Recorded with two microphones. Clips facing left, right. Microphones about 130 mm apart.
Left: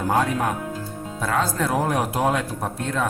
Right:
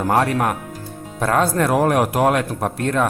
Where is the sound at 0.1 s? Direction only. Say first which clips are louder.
Right 3 dB; 80° right.